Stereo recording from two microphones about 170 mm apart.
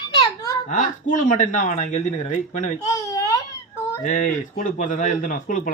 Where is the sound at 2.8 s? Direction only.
20° left (ahead or behind).